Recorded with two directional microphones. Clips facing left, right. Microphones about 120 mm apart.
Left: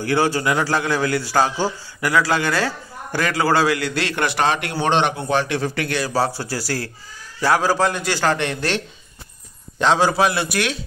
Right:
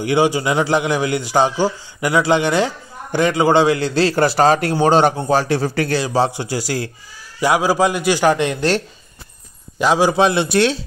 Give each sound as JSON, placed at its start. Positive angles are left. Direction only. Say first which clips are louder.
{"t": 0.0, "sound": "a man's voice", "louder": "right 3 dB", "side_deg": -15}
{"t": 6.0, "sound": "a man's voice", "louder": "right 3 dB", "side_deg": -20}
{"t": 9.8, "sound": "a man's voice", "louder": "right 2 dB", "side_deg": -10}